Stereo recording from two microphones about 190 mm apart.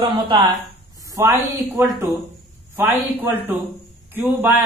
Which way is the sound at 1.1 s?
15° right (ahead or behind).